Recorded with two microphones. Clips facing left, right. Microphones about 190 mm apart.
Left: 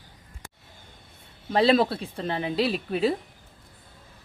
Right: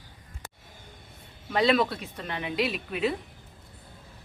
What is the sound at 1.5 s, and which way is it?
A woman's voice, 30° left (ahead or behind).